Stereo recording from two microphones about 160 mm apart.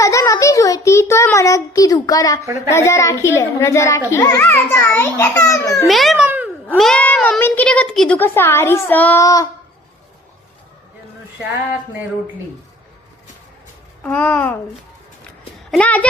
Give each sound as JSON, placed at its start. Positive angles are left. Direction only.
{"t": 0.0, "sound": "a child's voice", "side_deg": 20}
{"t": 5.9, "sound": "a child's voice", "side_deg": 0}
{"t": 6.2, "sound": "a sound", "side_deg": -10}
{"t": 6.7, "sound": "a child's voice", "side_deg": 5}
{"t": 14.0, "sound": "a child's voice", "side_deg": 10}
{"t": 15.7, "sound": "a child's voice", "side_deg": 10}